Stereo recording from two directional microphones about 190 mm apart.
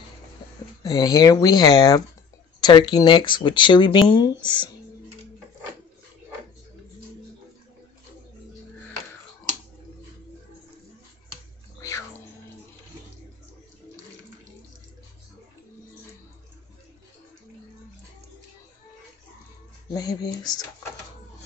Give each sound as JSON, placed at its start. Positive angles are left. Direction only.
{"t": 0.8, "sound": "speech", "side_deg": 20}
{"t": 19.9, "sound": "speech", "side_deg": 20}